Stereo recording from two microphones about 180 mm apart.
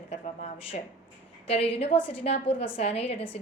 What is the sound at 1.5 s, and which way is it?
A woman's voice, 35° left (ahead or behind).